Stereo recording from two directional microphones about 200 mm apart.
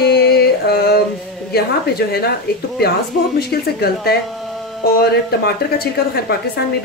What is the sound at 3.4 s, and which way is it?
Speech, 50° left (ahead or behind).